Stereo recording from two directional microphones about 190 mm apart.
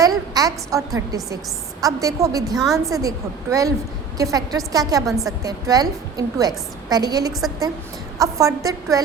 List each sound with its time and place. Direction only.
0.3 s a woman's voice: 20° right (ahead or behind)